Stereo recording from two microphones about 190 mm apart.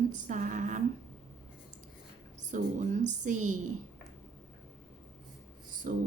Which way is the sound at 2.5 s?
40° right (ahead or behind).